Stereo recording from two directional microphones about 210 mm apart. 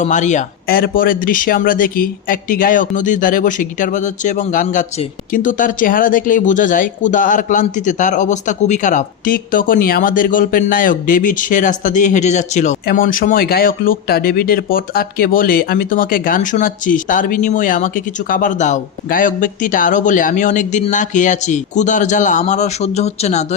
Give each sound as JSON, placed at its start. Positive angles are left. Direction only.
{"t": 0.0, "sound": "speech", "side_deg": 35}